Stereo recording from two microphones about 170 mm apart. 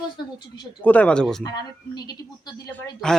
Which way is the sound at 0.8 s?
10° left (ahead or behind).